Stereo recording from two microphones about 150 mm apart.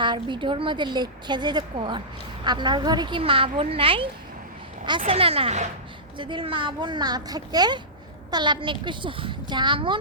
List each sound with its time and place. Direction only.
0.0 s a woman's voice: 30° right (ahead or behind)